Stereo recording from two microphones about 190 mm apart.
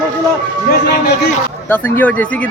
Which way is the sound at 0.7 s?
55° left (ahead or behind).